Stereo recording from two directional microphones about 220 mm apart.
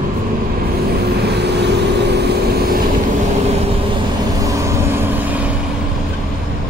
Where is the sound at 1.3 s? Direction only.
50° right (ahead or behind).